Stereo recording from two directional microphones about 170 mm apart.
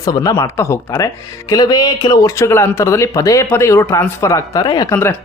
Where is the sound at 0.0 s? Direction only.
20° left (ahead or behind).